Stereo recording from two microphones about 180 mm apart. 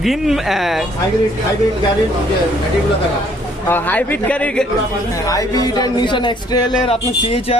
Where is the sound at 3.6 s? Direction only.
10° left (ahead or behind).